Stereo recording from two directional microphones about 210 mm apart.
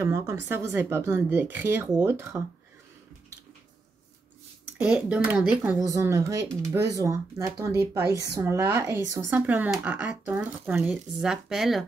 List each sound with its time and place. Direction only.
0.0 s speech: 15° right (ahead or behind)
4.7 s speech: 5° right (ahead or behind)